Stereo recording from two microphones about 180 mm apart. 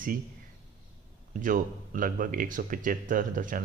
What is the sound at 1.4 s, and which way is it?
Speech, 50° right (ahead or behind).